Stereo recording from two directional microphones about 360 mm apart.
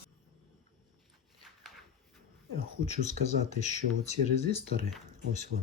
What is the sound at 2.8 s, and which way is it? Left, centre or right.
Speech, centre.